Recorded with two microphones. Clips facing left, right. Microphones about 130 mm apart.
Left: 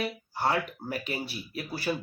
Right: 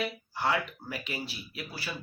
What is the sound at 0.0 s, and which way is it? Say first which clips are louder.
Speech: left 2 dB; 40° left (ahead or behind).